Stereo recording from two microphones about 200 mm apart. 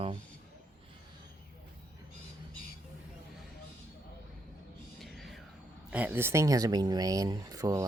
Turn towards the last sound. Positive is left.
turn(degrees=-15)  # may be behind; listen again after turning